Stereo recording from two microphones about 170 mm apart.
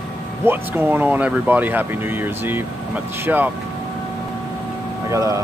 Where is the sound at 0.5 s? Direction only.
10° right (ahead or behind).